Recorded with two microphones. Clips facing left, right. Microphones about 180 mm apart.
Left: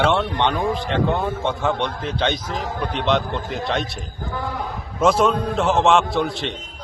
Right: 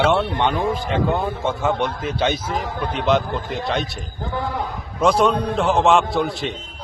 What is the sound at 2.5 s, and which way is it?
Speech, 45° left (ahead or behind).